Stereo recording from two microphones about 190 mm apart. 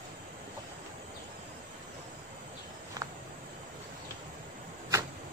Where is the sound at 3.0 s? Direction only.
20° right (ahead or behind).